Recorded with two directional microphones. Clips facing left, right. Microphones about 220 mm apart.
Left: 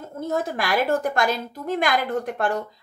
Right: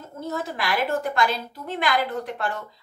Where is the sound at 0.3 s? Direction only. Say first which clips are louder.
Left 3 dB; 45° left (ahead or behind).